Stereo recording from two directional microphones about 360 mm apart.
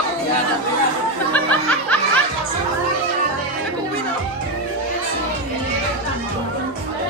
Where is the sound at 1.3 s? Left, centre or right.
Centre.